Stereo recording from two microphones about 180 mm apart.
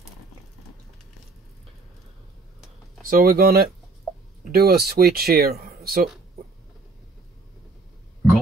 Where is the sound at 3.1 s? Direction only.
55° right (ahead or behind).